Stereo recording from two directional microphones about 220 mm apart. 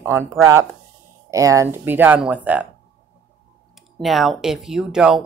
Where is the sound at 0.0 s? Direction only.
10° right (ahead or behind).